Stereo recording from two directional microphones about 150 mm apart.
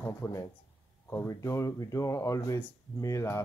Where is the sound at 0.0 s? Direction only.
20° left (ahead or behind).